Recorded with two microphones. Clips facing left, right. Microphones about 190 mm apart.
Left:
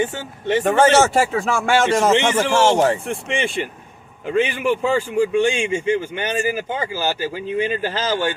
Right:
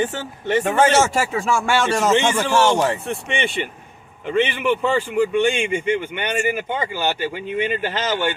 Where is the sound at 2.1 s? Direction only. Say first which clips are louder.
Left 1 dB; 25° left (ahead or behind).